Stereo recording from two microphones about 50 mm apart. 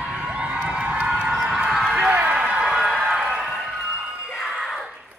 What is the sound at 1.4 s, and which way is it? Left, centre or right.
Run, centre.